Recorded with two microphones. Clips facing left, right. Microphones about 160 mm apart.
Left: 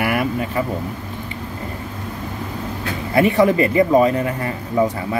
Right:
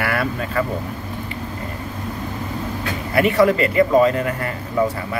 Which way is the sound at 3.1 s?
25° left (ahead or behind).